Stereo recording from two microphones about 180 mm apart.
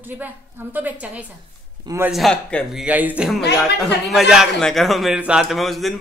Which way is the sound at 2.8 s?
10° right (ahead or behind).